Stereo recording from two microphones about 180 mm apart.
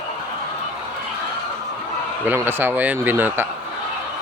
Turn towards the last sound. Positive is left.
turn(degrees=-10)  # may be behind; listen again after turning